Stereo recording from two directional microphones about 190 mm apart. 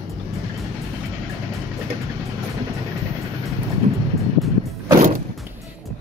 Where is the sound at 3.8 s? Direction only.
35° right (ahead or behind).